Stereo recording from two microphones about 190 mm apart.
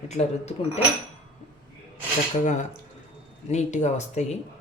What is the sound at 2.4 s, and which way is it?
A woman's voice, 40° left (ahead or behind).